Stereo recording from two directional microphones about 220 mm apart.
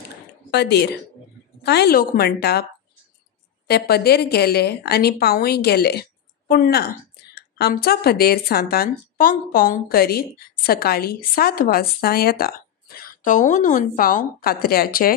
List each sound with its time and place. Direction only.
0.5 s speech: 50° left (ahead or behind)
3.6 s speech: 45° left (ahead or behind)